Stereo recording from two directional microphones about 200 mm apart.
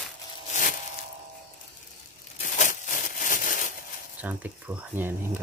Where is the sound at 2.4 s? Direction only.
40° left (ahead or behind).